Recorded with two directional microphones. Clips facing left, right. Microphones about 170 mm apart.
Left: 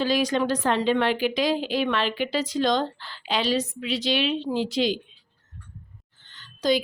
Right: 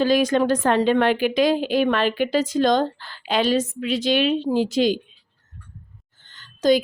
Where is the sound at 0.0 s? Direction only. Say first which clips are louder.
Right 5 dB; 50° right (ahead or behind).